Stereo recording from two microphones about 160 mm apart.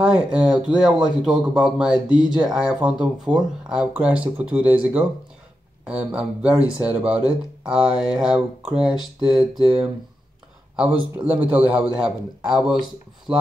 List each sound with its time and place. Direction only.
0.0 s speech: 5° right (ahead or behind)
2.0 s speech: 25° left (ahead or behind)
2.3 s speech: 5° right (ahead or behind)
11.1 s speech: 10° right (ahead or behind)